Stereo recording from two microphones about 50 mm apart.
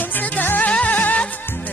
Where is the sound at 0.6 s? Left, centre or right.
Left.